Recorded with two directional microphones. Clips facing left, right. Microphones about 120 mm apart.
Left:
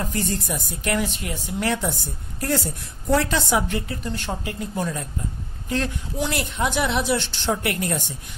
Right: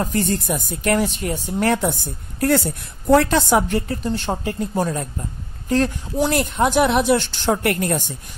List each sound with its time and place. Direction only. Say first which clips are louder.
0.0 s speech: right 5 dB; 45° right (ahead or behind)
3.1 s speech: right 6 dB; 55° right (ahead or behind)
4.0 s speech: right 6 dB; 30° right (ahead or behind); by 8.0 s 50° right (ahead or behind)